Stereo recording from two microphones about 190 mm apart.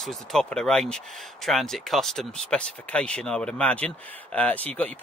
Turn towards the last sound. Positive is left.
turn(degrees=10)  # may be behind; listen again after turning